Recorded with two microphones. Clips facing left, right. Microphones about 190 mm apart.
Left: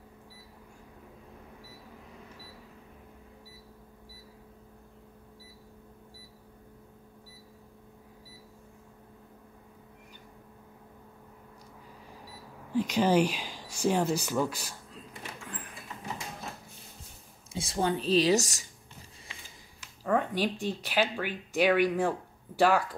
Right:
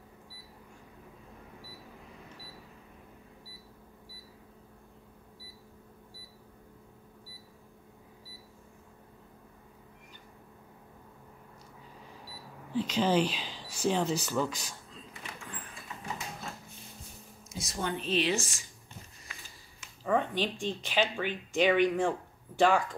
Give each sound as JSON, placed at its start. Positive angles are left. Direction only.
{"t": 12.7, "sound": "speech", "side_deg": 10}
{"t": 17.5, "sound": "a woman's voice", "side_deg": 30}
{"t": 20.1, "sound": "a sound", "side_deg": 10}
{"t": 20.6, "sound": "speech", "side_deg": 10}